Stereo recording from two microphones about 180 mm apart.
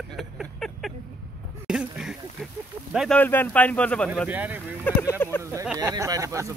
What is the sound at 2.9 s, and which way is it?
Speech, centre (ahead or behind).